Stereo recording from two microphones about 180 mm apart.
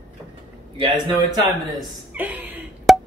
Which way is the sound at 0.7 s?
25° right (ahead or behind).